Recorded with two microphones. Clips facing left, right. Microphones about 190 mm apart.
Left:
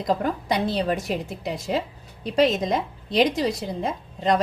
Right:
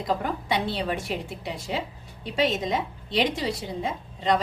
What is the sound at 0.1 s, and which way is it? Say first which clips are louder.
A woman's voice: left 3 dB; 40° left (ahead or behind).